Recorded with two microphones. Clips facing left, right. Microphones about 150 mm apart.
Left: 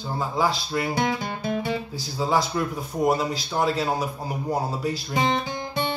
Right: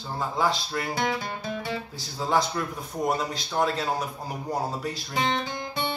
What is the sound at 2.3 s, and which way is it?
Speech, 5° left (ahead or behind).